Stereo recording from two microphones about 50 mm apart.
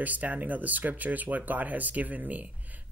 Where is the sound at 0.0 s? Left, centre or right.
Right.